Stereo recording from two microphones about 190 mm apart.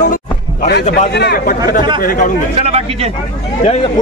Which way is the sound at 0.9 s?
60° left (ahead or behind).